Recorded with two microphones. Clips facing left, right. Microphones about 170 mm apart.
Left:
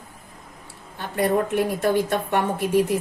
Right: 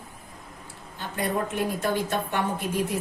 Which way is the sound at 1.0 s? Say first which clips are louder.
Left 6 dB; 60° left (ahead or behind).